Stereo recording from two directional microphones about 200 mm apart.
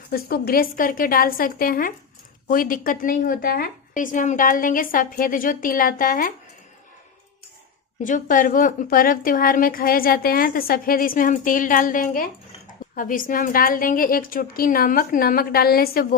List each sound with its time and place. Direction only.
0.1 s a woman's voice: 50° left (ahead or behind)
8.0 s a woman's voice: 40° left (ahead or behind)